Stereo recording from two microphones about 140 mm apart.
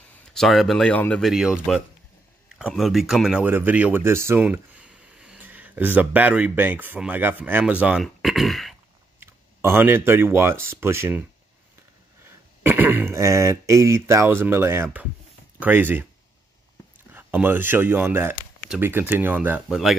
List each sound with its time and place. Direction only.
0.3 s speech: centre (ahead or behind)
1.3 s speech: 5° right (ahead or behind)
9.2 s speech: 15° right (ahead or behind)
12.6 s speech: 15° right (ahead or behind)
17.1 s speech: 15° right (ahead or behind)